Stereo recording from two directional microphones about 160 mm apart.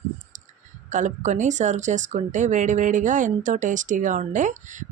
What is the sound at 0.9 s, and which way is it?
Speech, 50° right (ahead or behind).